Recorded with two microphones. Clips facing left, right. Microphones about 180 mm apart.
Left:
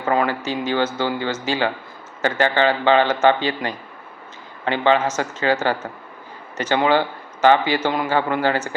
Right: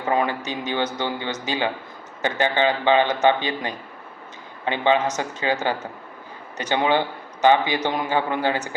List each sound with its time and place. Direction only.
0.2 s a man's voice: 20° right (ahead or behind)